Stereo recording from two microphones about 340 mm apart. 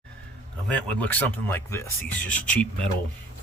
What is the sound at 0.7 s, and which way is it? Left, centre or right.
Speech, centre.